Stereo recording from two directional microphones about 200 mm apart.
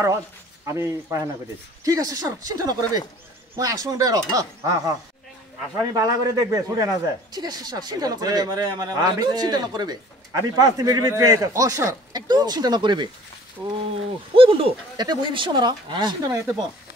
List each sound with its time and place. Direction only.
0.7 s speech: 15° right (ahead or behind)
5.9 s speech: 15° right (ahead or behind)
14.3 s speech: 25° right (ahead or behind)